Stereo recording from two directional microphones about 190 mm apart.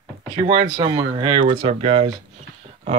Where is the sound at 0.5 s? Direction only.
25° right (ahead or behind).